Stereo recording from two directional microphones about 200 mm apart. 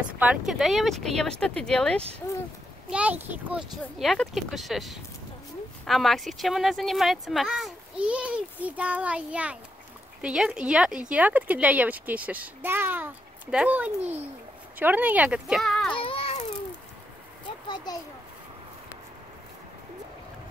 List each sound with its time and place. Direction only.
0.0 s speech: 5° right (ahead or behind)
2.9 s speech: 5° right (ahead or behind)
16.0 s a sound: 30° left (ahead or behind)